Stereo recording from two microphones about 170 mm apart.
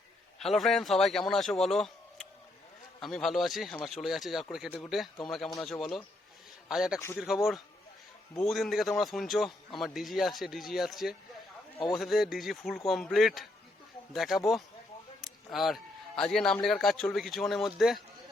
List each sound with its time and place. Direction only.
0.3 s a man's voice: centre (ahead or behind)
3.0 s a man's voice: centre (ahead or behind)
15.2 s a sound: centre (ahead or behind)
16.6 s a man's voice: centre (ahead or behind)